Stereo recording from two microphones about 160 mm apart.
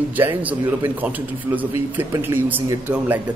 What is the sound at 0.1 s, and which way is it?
Speech, 10° right (ahead or behind).